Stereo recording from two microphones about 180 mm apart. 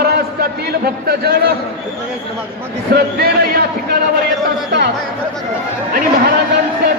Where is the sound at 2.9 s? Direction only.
60° right (ahead or behind).